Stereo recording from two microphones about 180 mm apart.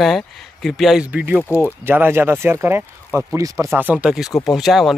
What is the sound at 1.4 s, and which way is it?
Speech, 10° left (ahead or behind).